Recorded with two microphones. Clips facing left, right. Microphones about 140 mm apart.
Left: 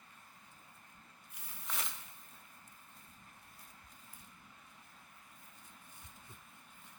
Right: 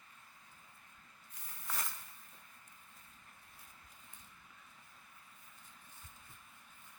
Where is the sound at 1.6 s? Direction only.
Centre (ahead or behind).